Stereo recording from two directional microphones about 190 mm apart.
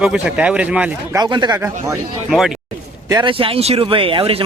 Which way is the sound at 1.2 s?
20° right (ahead or behind).